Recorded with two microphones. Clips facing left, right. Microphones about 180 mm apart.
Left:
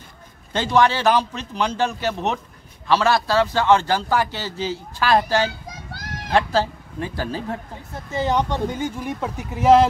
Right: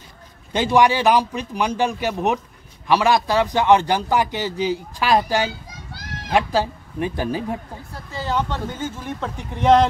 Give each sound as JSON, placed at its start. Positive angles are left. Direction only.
{"t": 0.5, "sound": "a man's voice", "side_deg": -15}
{"t": 7.9, "sound": "speech", "side_deg": 20}